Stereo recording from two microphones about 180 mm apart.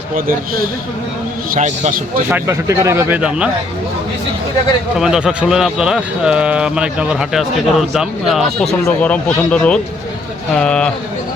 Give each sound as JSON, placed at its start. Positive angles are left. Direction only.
{"t": 1.5, "sound": "speech", "side_deg": -40}
{"t": 2.3, "sound": "speech", "side_deg": -15}
{"t": 4.9, "sound": "speech", "side_deg": -5}